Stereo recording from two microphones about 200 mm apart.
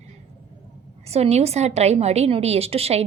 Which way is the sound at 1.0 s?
30° right (ahead or behind).